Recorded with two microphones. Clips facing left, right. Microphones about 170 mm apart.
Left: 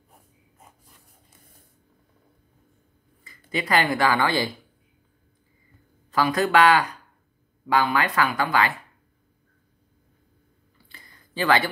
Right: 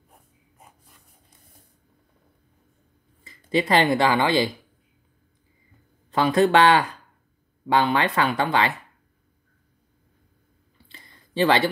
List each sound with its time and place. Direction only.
3.3 s speech: 25° right (ahead or behind)
6.1 s speech: 25° right (ahead or behind)
10.9 s a sound: 25° right (ahead or behind)